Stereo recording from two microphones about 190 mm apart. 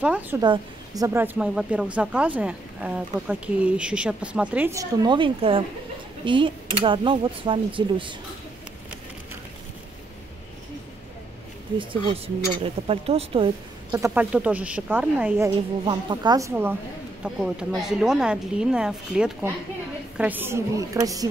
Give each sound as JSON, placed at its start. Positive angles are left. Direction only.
{"t": 0.0, "sound": "speech", "side_deg": -5}
{"t": 0.4, "sound": "speech", "side_deg": -20}
{"t": 11.8, "sound": "speech", "side_deg": -25}
{"t": 13.9, "sound": "speech", "side_deg": -15}
{"t": 15.8, "sound": "a woman's voice", "side_deg": -25}